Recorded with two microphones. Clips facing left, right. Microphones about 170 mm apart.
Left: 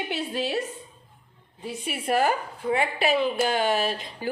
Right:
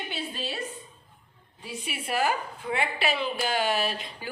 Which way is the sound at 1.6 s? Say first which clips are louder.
Left 4 dB; 50° left (ahead or behind).